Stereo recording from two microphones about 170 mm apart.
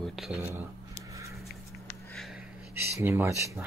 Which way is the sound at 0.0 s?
Centre (ahead or behind).